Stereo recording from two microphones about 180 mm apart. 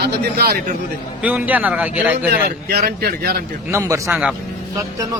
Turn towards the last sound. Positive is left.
turn(degrees=-20)  # may be behind; listen again after turning